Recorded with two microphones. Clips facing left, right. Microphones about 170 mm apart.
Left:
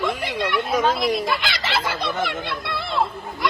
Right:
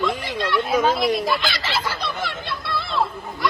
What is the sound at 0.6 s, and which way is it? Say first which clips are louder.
Speech: right 2 dB; centre (ahead or behind).